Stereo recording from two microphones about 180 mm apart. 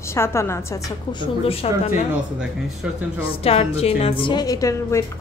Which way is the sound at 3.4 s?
35° left (ahead or behind).